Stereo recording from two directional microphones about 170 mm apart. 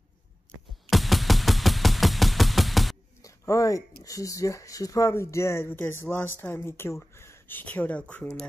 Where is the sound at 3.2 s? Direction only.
20° left (ahead or behind).